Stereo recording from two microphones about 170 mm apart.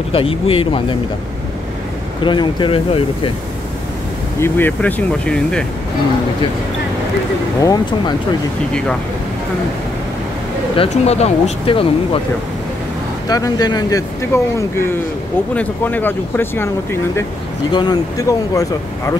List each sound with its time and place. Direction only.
0.1 s speech: 35° left (ahead or behind)
2.2 s speech: 30° left (ahead or behind)
4.4 s speech: 10° left (ahead or behind)
7.6 s speech: 25° left (ahead or behind)
10.8 s speech: 40° left (ahead or behind)
13.3 s speech: 20° left (ahead or behind)